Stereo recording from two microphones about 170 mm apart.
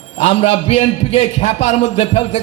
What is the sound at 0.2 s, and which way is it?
A man's voice, 35° left (ahead or behind).